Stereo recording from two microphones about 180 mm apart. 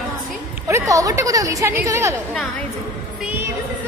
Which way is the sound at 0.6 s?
15° right (ahead or behind).